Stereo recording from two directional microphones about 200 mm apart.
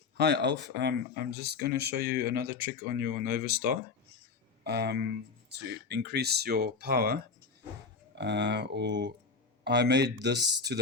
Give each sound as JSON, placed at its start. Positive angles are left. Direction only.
{"t": 0.2, "sound": "speech", "side_deg": -55}